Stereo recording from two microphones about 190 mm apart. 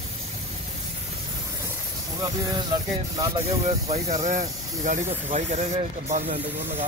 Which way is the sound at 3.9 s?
35° right (ahead or behind).